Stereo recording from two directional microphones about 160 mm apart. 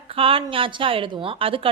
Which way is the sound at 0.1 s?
35° right (ahead or behind).